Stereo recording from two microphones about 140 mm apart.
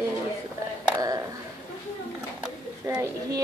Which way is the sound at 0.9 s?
25° right (ahead or behind).